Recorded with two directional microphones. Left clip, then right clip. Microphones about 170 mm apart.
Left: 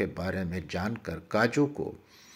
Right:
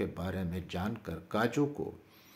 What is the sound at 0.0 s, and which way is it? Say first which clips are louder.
Speech: left 5 dB; 15° left (ahead or behind).